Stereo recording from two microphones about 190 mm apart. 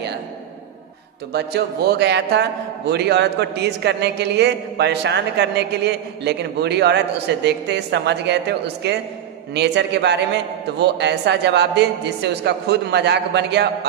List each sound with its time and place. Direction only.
1.3 s a man's voice: 60° right (ahead or behind)